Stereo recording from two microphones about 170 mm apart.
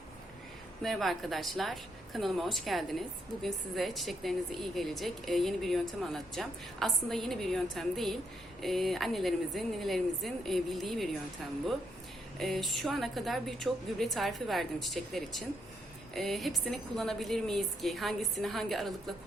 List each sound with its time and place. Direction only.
0.8 s a woman's voice: centre (ahead or behind)
12.4 s a woman's voice: centre (ahead or behind)